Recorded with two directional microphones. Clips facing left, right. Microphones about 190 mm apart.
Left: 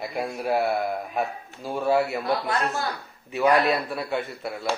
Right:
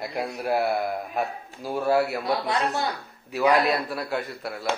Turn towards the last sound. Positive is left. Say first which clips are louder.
# left 1 dB
turn(degrees=0)  # may be behind; listen again after turning